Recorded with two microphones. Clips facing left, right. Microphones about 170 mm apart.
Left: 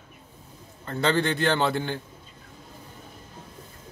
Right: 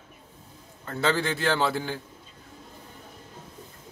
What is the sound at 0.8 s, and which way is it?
A man's voice, 5° right (ahead or behind).